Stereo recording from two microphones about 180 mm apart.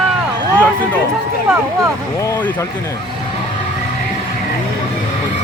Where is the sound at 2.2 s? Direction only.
15° left (ahead or behind).